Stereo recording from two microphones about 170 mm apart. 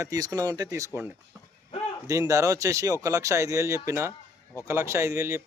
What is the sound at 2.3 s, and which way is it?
Speech, 20° right (ahead or behind).